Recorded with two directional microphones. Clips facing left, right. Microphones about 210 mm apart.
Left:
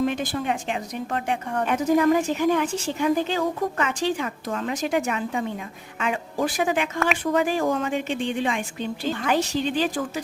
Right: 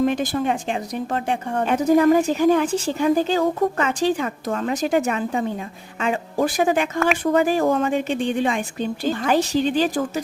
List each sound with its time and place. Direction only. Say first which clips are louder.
0.0 s speech: right 4 dB; 40° right (ahead or behind)